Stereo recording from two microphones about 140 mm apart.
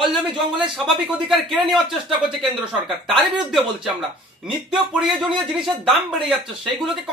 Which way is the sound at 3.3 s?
Centre (ahead or behind).